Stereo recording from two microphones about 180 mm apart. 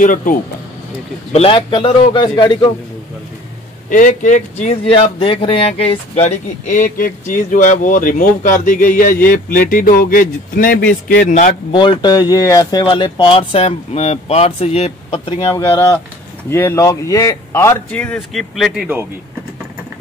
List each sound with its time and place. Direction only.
0.0 s speech: 45° left (ahead or behind)
1.3 s speech: 30° left (ahead or behind)
3.9 s speech: 45° left (ahead or behind)
11.7 s speech: 25° left (ahead or behind); by 18.9 s centre (ahead or behind)